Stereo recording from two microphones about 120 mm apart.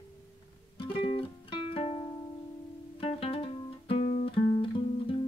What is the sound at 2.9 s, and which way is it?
Guitar, 50° left (ahead or behind).